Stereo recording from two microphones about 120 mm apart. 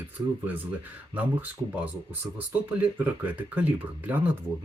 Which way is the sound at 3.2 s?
15° right (ahead or behind).